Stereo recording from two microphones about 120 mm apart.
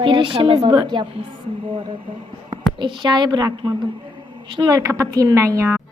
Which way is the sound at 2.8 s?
40° right (ahead or behind).